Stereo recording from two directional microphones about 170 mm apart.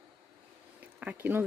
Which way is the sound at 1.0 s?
10° right (ahead or behind).